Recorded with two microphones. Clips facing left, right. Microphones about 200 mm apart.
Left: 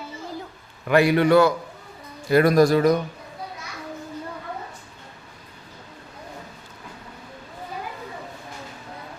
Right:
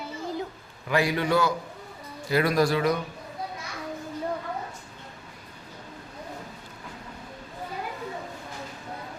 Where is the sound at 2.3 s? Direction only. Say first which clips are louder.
Left 7 dB; 50° left (ahead or behind).